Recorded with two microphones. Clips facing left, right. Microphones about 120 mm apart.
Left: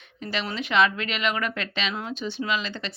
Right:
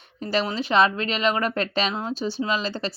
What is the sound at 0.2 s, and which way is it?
Speech, 40° right (ahead or behind).